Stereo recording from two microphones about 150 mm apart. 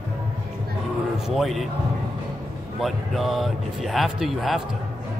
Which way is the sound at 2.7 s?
Centre (ahead or behind).